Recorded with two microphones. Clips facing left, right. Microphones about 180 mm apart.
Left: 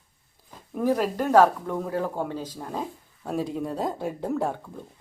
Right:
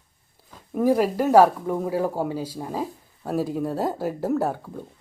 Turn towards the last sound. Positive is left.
turn(degrees=-5)  # may be behind; listen again after turning